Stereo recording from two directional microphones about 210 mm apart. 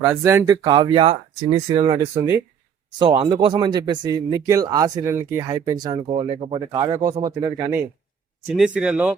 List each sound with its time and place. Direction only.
0.0 s speech: 15° right (ahead or behind)